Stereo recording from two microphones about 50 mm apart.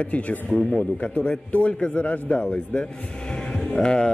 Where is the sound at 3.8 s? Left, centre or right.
Centre.